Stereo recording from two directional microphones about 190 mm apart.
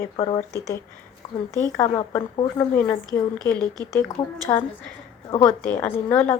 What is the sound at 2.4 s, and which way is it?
A woman's voice, 20° left (ahead or behind).